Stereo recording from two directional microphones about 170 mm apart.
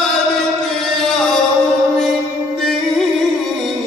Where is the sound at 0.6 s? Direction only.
5° left (ahead or behind).